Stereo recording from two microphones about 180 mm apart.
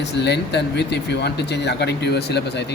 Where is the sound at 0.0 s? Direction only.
70° left (ahead or behind).